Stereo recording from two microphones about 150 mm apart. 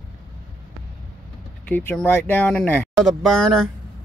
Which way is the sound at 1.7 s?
10° left (ahead or behind).